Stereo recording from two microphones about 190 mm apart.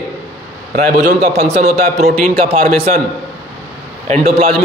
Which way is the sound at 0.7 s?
35° right (ahead or behind).